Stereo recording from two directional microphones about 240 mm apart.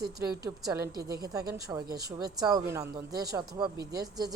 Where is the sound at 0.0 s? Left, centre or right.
Centre.